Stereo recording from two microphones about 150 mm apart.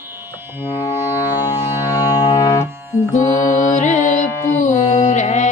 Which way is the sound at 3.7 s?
50° left (ahead or behind).